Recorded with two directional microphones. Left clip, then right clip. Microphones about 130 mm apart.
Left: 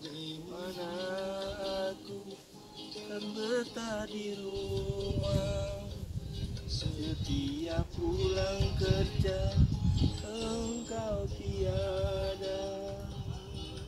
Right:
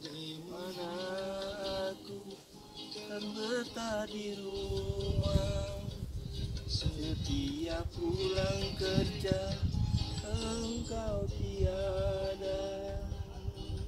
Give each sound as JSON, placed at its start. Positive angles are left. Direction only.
{"t": 0.6, "sound": "mantra", "side_deg": -20}
{"t": 3.1, "sound": "music", "side_deg": -15}
{"t": 6.7, "sound": "music", "side_deg": -25}
{"t": 11.6, "sound": "music", "side_deg": 0}